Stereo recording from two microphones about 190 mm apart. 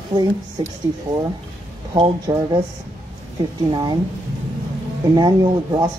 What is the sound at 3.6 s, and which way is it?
Speech, 25° right (ahead or behind).